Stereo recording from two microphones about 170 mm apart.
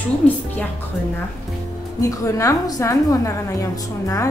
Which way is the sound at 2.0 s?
20° left (ahead or behind).